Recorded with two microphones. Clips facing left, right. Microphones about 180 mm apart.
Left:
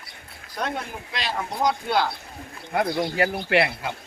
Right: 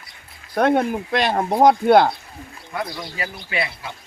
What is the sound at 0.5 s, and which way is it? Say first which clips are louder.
Speech: right 12 dB; 55° right (ahead or behind).